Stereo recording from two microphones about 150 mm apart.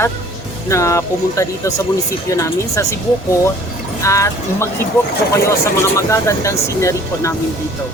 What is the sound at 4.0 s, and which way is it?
Speech, 20° left (ahead or behind).